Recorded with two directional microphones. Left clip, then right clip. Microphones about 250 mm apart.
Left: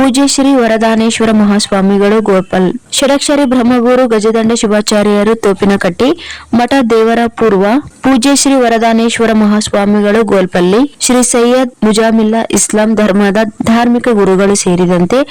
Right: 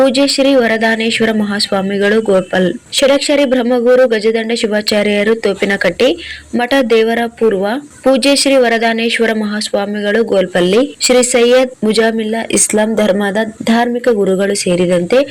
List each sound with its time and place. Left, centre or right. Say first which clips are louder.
0.2 s speech: left 1 dB; left